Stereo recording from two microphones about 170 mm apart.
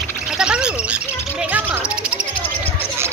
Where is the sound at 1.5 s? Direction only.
10° right (ahead or behind).